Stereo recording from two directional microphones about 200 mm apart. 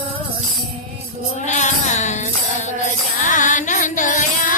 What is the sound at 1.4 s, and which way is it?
Music, 35° left (ahead or behind).